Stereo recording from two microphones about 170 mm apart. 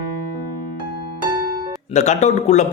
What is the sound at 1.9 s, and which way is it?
Speech, 45° left (ahead or behind).